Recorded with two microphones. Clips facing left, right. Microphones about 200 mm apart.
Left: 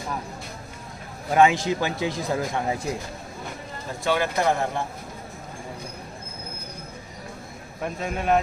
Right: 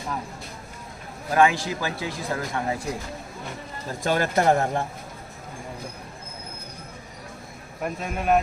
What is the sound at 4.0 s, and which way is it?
Speech, 45° right (ahead or behind).